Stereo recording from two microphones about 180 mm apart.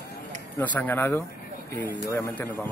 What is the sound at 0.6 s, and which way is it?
Speech, 10° left (ahead or behind).